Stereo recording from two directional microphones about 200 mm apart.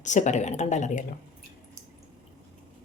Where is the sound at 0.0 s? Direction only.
35° left (ahead or behind).